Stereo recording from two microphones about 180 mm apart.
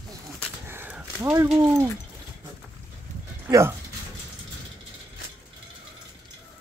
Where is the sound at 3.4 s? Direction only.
15° right (ahead or behind).